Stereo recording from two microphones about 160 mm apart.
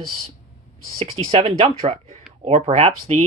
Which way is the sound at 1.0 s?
35° right (ahead or behind).